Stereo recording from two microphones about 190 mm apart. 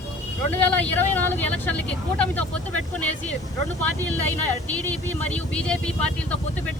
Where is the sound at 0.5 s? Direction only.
10° left (ahead or behind).